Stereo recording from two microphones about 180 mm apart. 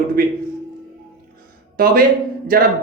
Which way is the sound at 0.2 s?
55° right (ahead or behind).